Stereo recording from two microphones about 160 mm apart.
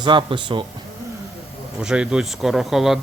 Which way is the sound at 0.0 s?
30° right (ahead or behind).